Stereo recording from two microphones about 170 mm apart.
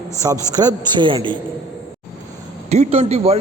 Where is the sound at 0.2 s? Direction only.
20° right (ahead or behind).